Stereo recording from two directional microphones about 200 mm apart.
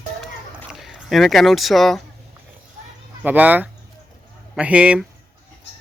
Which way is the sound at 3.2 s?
10° right (ahead or behind).